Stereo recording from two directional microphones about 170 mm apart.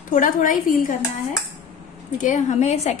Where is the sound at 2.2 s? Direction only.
45° left (ahead or behind).